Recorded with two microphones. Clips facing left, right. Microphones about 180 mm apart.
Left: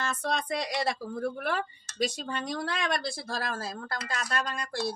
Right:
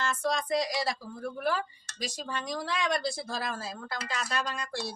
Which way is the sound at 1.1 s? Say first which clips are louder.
Left 1 dB; 65° left (ahead or behind).